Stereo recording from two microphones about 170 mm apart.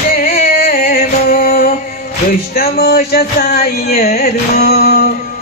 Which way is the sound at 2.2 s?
65° left (ahead or behind).